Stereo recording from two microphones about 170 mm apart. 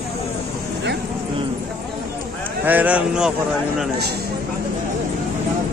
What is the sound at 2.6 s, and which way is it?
Speech, 10° right (ahead or behind).